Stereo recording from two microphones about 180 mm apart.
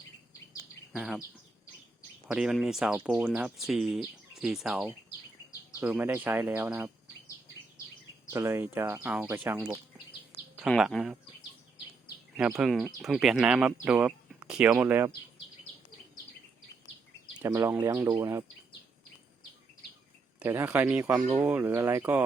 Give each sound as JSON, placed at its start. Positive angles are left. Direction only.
{"t": 0.9, "sound": "speech", "side_deg": -5}
{"t": 2.2, "sound": "speech", "side_deg": -5}
{"t": 8.3, "sound": "speech", "side_deg": -15}
{"t": 12.5, "sound": "speech", "side_deg": 0}
{"t": 17.3, "sound": "speech", "side_deg": -15}
{"t": 20.4, "sound": "speech", "side_deg": -10}